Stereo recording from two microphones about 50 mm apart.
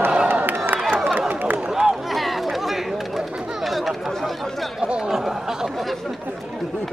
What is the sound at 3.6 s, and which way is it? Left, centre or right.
Chatter, centre.